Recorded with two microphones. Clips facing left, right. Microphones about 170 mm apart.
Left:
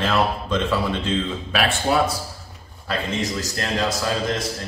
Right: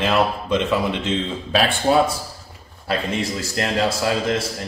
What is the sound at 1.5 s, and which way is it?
Speech, 30° right (ahead or behind).